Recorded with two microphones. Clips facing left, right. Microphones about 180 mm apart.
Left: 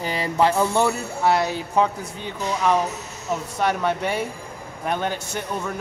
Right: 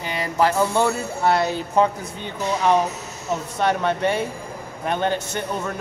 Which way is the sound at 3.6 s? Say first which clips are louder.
Right 2 dB; 10° left (ahead or behind).